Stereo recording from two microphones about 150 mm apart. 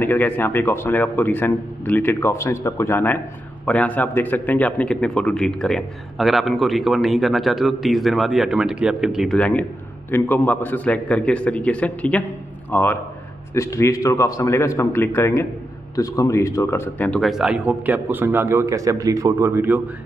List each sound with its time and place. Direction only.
0.0 s a man's voice: 15° left (ahead or behind)
17.2 s a man's voice: centre (ahead or behind)